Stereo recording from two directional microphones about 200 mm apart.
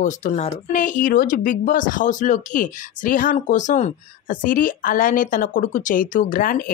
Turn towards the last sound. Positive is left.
turn(degrees=45)  # may be behind; listen again after turning